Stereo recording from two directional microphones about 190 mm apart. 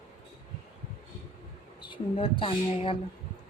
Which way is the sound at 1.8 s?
25° left (ahead or behind).